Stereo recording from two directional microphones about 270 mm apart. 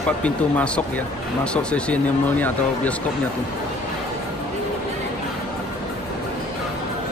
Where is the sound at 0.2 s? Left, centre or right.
Centre.